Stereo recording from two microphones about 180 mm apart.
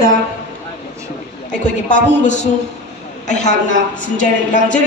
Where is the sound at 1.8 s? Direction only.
45° left (ahead or behind).